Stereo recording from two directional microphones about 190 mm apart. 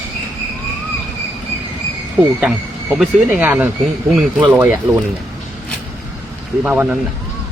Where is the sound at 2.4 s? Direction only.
Centre (ahead or behind).